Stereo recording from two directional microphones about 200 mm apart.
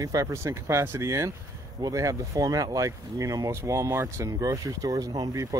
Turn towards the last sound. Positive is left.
turn(degrees=-15)  # may be behind; listen again after turning